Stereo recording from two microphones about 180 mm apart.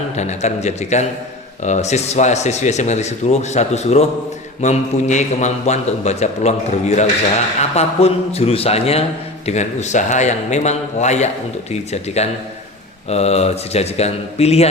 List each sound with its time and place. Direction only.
0.2 s a man's voice: 40° left (ahead or behind)